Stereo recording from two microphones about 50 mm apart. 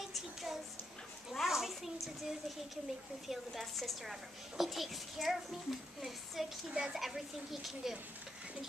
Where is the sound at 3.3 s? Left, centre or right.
Centre.